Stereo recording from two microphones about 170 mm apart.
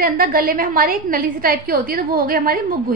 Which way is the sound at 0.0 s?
55° right (ahead or behind).